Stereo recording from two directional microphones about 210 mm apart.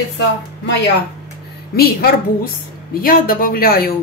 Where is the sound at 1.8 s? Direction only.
45° left (ahead or behind).